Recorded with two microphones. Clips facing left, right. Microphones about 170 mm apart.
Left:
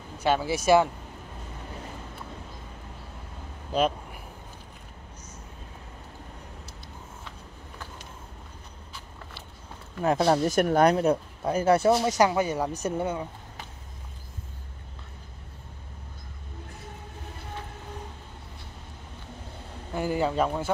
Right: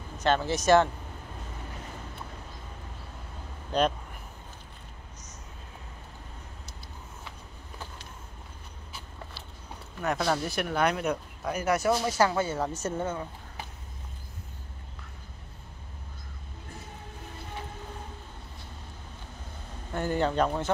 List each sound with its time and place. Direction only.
0.2 s speech: 10° left (ahead or behind)
3.7 s speech: 5° left (ahead or behind)
10.0 s speech: 30° left (ahead or behind)
10.4 s speech: 45° left (ahead or behind); by 13.3 s 15° left (ahead or behind)
19.9 s speech: 10° left (ahead or behind)